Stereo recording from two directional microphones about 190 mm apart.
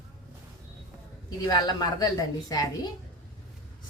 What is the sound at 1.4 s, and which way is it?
A woman's voice, 20° left (ahead or behind).